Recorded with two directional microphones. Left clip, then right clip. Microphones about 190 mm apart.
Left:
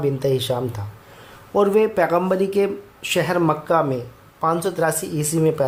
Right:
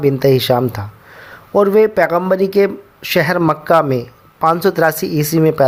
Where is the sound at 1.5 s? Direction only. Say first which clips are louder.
Right 6 dB; 20° right (ahead or behind).